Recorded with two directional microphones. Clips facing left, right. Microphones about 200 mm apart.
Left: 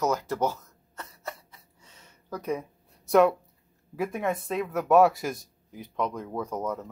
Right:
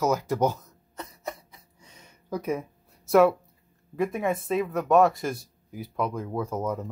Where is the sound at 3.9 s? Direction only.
Centre (ahead or behind).